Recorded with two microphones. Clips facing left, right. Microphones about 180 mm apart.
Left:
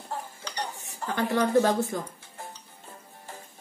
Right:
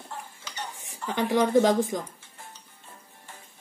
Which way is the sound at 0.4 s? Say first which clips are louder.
Left 4 dB; 40° left (ahead or behind).